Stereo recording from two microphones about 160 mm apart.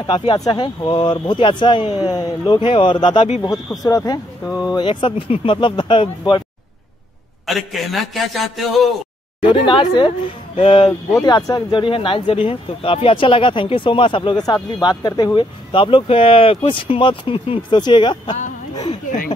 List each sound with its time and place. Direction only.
0.0 s speech: 30° left (ahead or behind)
7.4 s a man's voice: centre (ahead or behind)
9.4 s speech: 30° left (ahead or behind)